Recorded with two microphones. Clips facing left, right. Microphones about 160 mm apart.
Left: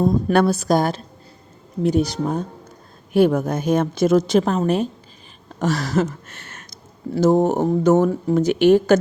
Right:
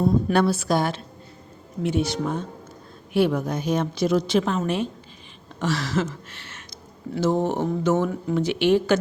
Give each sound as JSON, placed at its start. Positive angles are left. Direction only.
{"t": 0.0, "sound": "a woman's voice", "side_deg": 45}